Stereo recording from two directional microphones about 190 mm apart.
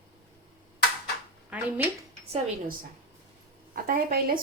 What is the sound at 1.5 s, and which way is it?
Speech, 10° right (ahead or behind).